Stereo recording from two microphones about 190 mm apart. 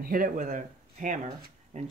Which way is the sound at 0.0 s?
50° right (ahead or behind).